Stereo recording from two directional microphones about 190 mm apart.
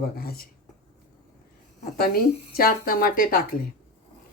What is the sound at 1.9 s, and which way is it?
Speech, 55° left (ahead or behind).